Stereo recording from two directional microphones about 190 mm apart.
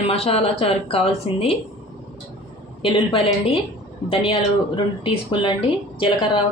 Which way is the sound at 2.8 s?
30° left (ahead or behind).